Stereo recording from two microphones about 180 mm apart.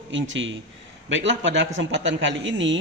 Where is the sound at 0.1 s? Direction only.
90° right.